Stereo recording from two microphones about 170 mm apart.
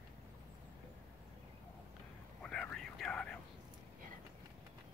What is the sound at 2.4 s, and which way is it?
Whispering, 5° left (ahead or behind).